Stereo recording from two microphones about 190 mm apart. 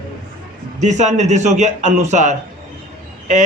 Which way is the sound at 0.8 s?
40° right (ahead or behind).